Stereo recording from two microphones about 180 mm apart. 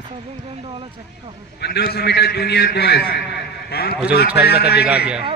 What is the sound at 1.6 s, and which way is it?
A man's voice, 65° left (ahead or behind).